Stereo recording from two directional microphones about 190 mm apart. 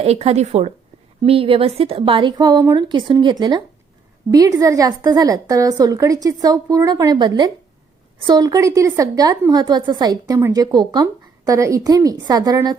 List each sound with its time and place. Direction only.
0.0 s a woman's voice: 35° right (ahead or behind)